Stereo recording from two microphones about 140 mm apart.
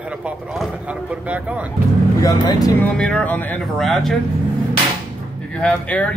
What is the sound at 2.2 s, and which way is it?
Speech, 25° left (ahead or behind).